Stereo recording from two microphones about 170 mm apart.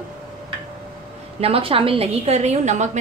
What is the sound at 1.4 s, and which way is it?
A woman's voice, 35° right (ahead or behind).